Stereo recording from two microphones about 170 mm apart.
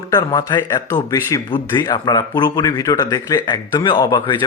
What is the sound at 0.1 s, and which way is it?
Speech, 20° left (ahead or behind).